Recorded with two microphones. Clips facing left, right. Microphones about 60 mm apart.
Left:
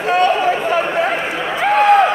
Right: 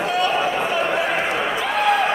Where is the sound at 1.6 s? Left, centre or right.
Left.